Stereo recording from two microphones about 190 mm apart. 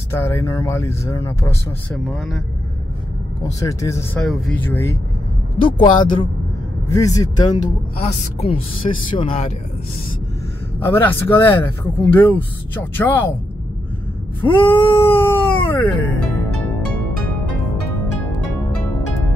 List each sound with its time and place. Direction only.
0.1 s speech: 15° left (ahead or behind)
1.9 s speech: 5° left (ahead or behind)
3.4 s speech: 15° left (ahead or behind)
4.2 s speech: 5° left (ahead or behind)
5.9 s speech: 25° left (ahead or behind)
10.8 s speech: 10° left (ahead or behind)
14.4 s cat: 10° left (ahead or behind)